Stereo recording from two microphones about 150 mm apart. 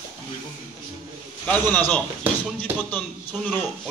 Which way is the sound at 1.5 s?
10° left (ahead or behind).